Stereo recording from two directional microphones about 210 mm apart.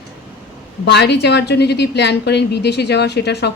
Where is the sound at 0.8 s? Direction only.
55° left (ahead or behind).